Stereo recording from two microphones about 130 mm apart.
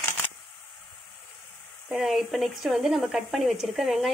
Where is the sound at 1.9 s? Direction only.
Centre (ahead or behind).